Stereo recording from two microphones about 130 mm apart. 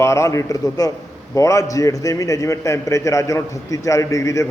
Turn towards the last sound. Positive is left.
turn(degrees=25)  # may be behind; listen again after turning